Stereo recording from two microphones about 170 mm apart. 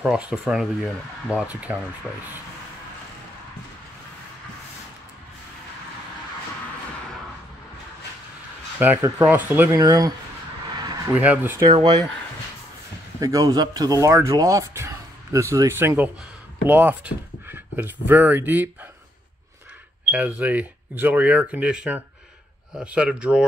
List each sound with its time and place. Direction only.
0.0 s speech: 5° right (ahead or behind)
8.7 s speech: 10° right (ahead or behind)
11.1 s speech: 10° right (ahead or behind)
11.6 s speech: 25° right (ahead or behind)
13.2 s speech: 20° right (ahead or behind)
20.1 s speech: 10° right (ahead or behind)